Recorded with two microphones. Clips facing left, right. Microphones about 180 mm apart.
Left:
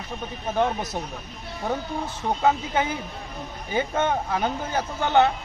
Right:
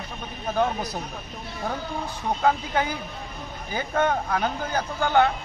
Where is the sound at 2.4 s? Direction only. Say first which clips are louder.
Left 1 dB; 20° left (ahead or behind).